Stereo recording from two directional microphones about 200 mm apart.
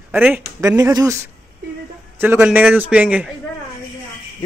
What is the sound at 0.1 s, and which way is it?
A man's voice, 10° right (ahead or behind).